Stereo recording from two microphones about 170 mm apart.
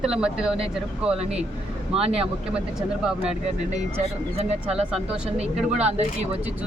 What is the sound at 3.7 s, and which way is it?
Speech, 40° right (ahead or behind).